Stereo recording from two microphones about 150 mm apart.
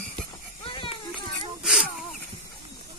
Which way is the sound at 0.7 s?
35° left (ahead or behind).